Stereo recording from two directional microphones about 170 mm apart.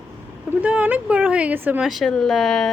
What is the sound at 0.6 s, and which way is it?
Speech, 10° right (ahead or behind).